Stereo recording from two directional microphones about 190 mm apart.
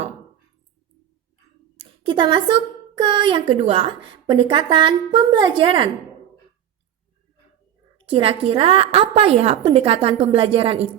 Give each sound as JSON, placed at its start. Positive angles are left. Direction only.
{"t": 1.8, "sound": "a woman's voice", "side_deg": -25}
{"t": 7.9, "sound": "a woman's voice", "side_deg": -30}